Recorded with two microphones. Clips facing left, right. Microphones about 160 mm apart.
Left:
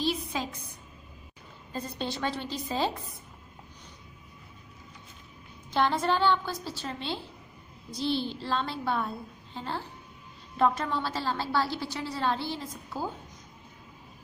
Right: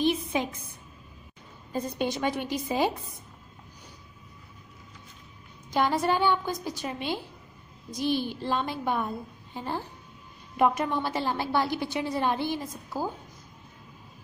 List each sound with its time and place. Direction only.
0.0 s a sound: 20° right (ahead or behind)
1.7 s a woman's voice: 15° right (ahead or behind)
5.7 s a woman's voice: 10° right (ahead or behind)